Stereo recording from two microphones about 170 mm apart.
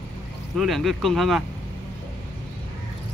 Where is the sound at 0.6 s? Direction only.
Centre (ahead or behind).